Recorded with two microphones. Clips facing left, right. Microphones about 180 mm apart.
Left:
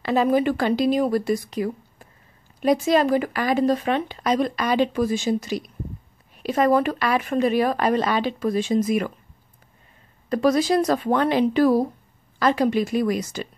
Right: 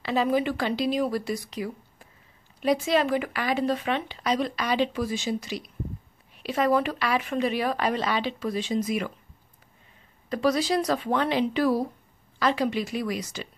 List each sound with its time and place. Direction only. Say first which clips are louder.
0.0 s speech: left 5 dB; 50° left (ahead or behind)
10.3 s speech: left 5 dB; 50° left (ahead or behind)